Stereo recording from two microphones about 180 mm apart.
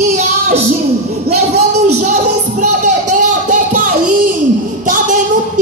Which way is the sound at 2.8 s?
45° right (ahead or behind).